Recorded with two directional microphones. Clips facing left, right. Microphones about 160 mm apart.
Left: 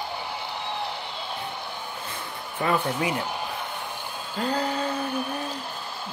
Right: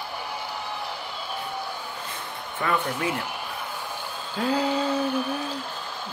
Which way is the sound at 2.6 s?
25° left (ahead or behind).